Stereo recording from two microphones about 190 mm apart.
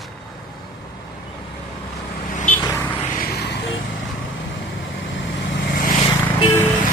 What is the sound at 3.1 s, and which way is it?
Music, 50° left (ahead or behind).